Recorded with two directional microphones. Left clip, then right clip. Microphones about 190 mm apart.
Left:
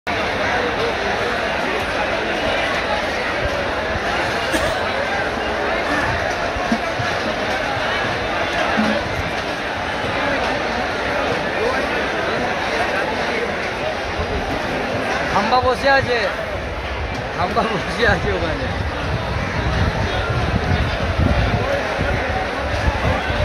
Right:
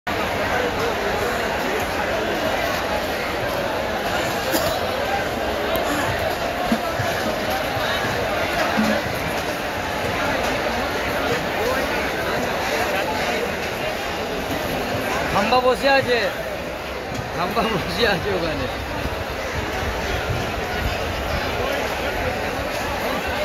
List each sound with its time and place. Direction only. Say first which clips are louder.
15.5 s speech: left 1 dB; 20° right (ahead or behind)